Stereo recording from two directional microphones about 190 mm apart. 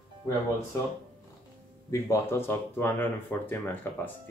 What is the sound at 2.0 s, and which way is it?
Speech, 15° left (ahead or behind).